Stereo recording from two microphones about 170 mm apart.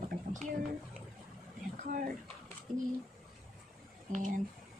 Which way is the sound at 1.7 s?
50° right (ahead or behind).